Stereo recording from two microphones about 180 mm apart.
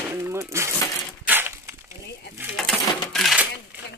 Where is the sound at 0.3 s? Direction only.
15° right (ahead or behind).